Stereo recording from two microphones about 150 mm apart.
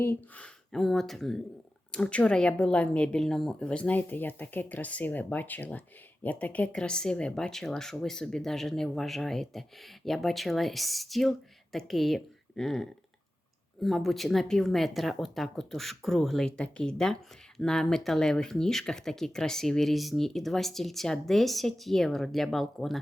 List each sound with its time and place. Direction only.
0.0 s speech: 10° left (ahead or behind)